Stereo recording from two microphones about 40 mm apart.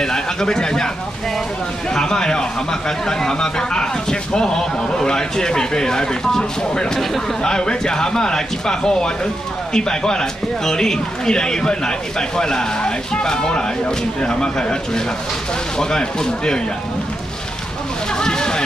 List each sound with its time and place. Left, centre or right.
0.0 s speech: centre
2.0 s a man's voice: centre
18.1 s a sound: centre